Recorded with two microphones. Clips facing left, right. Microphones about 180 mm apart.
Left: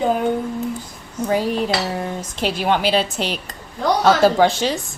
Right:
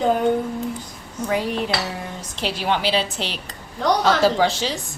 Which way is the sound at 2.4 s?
50° left (ahead or behind).